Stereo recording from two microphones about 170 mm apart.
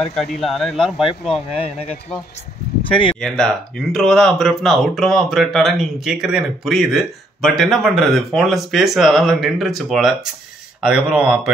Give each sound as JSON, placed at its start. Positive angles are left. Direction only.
{"t": 0.0, "sound": "speech", "side_deg": 5}
{"t": 1.6, "sound": "speech", "side_deg": 35}
{"t": 3.2, "sound": "speech", "side_deg": 5}